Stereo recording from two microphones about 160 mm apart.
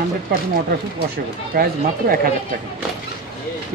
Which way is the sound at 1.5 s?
65° right (ahead or behind).